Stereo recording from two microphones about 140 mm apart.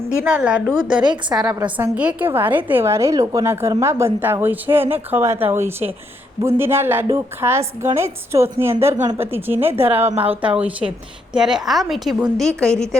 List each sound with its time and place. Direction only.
0.3 s a woman's voice: 10° right (ahead or behind)